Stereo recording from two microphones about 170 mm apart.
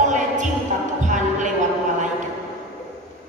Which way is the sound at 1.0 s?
45° right (ahead or behind).